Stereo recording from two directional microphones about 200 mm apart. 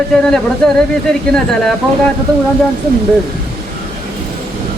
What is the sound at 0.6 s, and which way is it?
Speech, 5° left (ahead or behind).